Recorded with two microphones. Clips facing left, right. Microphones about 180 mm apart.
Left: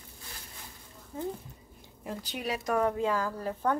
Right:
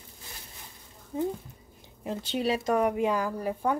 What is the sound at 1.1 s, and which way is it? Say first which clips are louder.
Speech: right 6 dB; 20° right (ahead or behind).